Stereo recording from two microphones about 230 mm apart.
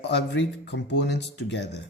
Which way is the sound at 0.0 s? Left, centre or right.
Left.